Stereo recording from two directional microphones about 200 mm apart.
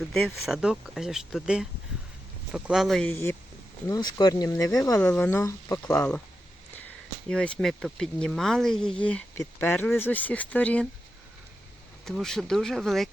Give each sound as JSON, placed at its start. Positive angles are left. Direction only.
{"t": 0.1, "sound": "speech", "side_deg": 0}
{"t": 12.0, "sound": "speech", "side_deg": 0}